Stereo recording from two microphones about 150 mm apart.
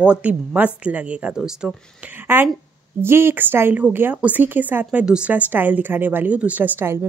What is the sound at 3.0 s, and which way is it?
Speech, 15° right (ahead or behind).